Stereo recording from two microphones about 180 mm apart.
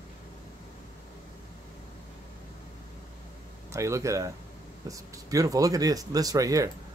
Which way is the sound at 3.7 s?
15° right (ahead or behind).